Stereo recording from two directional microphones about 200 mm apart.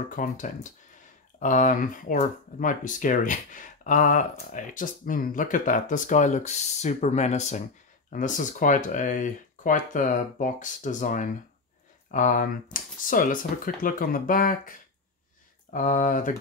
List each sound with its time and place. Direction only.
0.1 s speech: 40° left (ahead or behind)
15.7 s speech: 40° left (ahead or behind)